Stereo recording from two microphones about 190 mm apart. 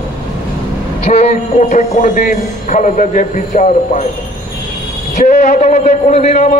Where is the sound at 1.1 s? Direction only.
35° left (ahead or behind).